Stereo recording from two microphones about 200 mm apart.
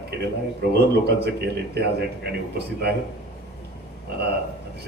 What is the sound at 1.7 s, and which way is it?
A man's voice, 55° right (ahead or behind).